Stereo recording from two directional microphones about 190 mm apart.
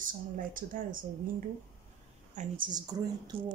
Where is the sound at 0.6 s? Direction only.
45° right (ahead or behind).